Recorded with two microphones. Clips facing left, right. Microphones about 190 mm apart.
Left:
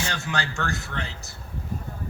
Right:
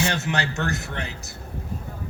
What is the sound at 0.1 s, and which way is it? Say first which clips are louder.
A man's voice: right 4 dB; 20° right (ahead or behind).